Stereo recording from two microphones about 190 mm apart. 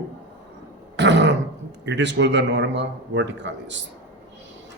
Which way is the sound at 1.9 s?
70° right (ahead or behind).